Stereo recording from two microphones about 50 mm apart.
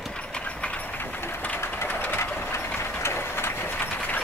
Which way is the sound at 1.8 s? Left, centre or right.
Left.